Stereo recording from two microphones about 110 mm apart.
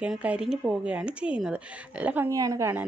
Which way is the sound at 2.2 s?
30° right (ahead or behind).